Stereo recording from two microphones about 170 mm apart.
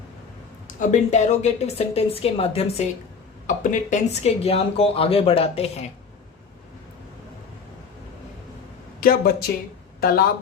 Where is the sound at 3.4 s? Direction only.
45° left (ahead or behind).